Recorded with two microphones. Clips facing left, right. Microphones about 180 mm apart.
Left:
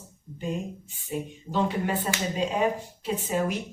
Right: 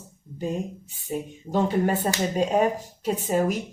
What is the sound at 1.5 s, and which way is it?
Speech, 45° right (ahead or behind).